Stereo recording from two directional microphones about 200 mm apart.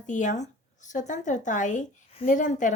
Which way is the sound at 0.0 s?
40° left (ahead or behind).